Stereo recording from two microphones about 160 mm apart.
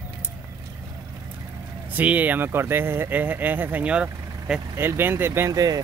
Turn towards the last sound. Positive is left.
turn(degrees=-25)  # may be behind; listen again after turning